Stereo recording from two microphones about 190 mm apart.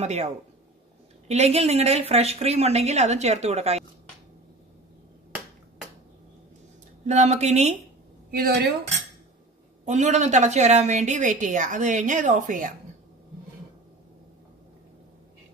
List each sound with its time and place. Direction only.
0.0 s a woman's voice: 35° right (ahead or behind)
1.3 s a woman's voice: 35° right (ahead or behind)
7.1 s a woman's voice: 35° right (ahead or behind)
8.3 s speech: 55° right (ahead or behind)
9.8 s a woman's voice: 40° right (ahead or behind)